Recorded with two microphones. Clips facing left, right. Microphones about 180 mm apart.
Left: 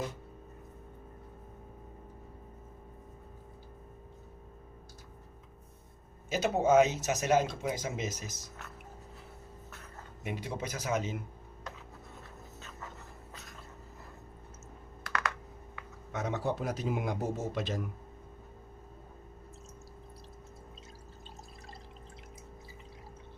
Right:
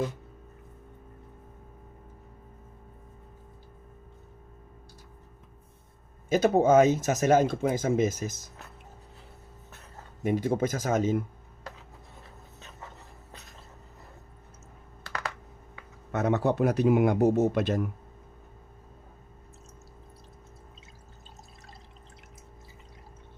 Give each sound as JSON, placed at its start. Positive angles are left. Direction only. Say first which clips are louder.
{"t": 6.3, "sound": "speech", "louder": "right 5 dB", "side_deg": -50}
{"t": 10.2, "sound": "speech", "louder": "right 12 dB", "side_deg": -45}
{"t": 16.1, "sound": "speech", "louder": "right 8 dB", "side_deg": -60}